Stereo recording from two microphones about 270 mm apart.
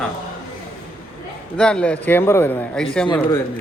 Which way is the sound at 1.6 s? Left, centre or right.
Centre.